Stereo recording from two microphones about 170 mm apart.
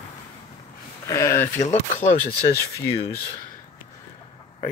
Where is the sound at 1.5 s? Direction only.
40° left (ahead or behind).